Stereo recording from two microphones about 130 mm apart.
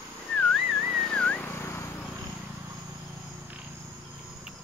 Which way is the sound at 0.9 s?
5° left (ahead or behind).